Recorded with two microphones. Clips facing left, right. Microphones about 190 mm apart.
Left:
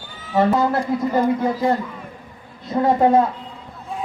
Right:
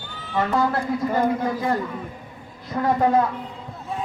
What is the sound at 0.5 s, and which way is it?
Speech, 20° left (ahead or behind).